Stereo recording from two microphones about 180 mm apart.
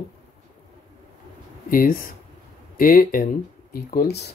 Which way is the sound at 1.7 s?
50° left (ahead or behind).